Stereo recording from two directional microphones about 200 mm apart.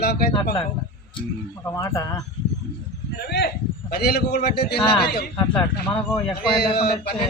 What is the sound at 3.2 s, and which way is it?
A man's voice, 55° left (ahead or behind).